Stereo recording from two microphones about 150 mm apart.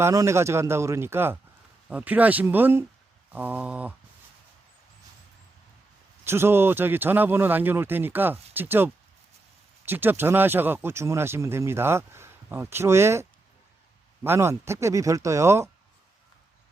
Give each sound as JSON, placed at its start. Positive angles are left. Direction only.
{"t": 0.0, "sound": "speech", "side_deg": -20}
{"t": 6.2, "sound": "speech", "side_deg": -15}
{"t": 14.3, "sound": "speech", "side_deg": -20}